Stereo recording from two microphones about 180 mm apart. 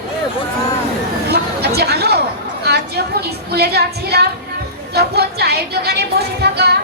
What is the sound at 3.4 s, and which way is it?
A woman's voice, 65° right (ahead or behind).